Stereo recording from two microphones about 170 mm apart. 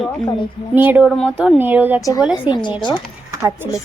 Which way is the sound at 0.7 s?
10° right (ahead or behind).